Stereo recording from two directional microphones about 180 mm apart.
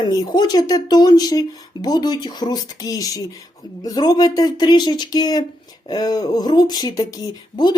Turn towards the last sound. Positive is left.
turn(degrees=20)  # may be behind; listen again after turning